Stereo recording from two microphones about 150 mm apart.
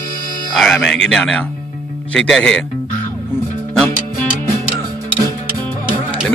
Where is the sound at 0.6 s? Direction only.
5° left (ahead or behind).